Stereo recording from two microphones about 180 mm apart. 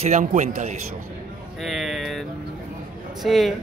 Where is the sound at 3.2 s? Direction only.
Centre (ahead or behind).